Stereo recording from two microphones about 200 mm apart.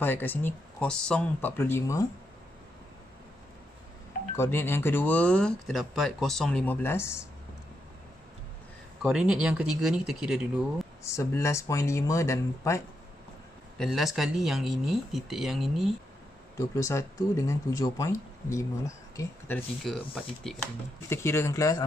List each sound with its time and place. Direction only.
0.0 s speech: 10° left (ahead or behind)
4.4 s speech: 10° left (ahead or behind)
9.0 s speech: 5° right (ahead or behind)
11.1 s speech: 15° left (ahead or behind)
13.7 s speech: centre (ahead or behind)
16.5 s speech: 15° left (ahead or behind)
21.1 s speech: 15° left (ahead or behind)